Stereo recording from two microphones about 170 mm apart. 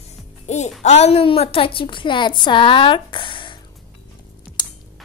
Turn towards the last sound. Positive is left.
turn(degrees=30)  # may be behind; listen again after turning